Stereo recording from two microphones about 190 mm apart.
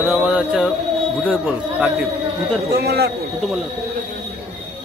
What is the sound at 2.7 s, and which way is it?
Speech, 55° right (ahead or behind).